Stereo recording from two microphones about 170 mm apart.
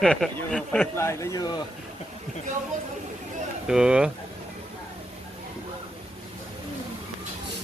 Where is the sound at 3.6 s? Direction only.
5° right (ahead or behind).